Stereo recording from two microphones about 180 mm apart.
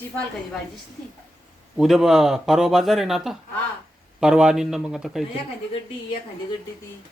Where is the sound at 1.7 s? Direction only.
Centre (ahead or behind).